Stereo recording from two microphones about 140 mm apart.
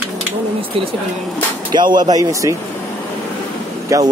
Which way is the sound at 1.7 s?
30° right (ahead or behind).